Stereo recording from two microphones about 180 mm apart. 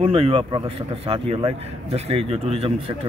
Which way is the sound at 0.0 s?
30° right (ahead or behind).